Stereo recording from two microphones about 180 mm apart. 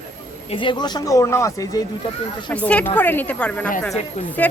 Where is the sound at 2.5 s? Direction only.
5° left (ahead or behind).